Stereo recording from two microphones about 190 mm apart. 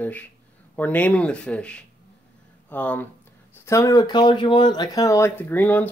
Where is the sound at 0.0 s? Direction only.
10° left (ahead or behind).